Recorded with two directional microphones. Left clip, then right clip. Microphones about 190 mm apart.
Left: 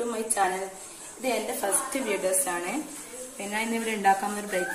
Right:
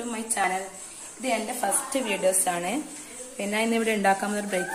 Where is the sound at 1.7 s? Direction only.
45° right (ahead or behind).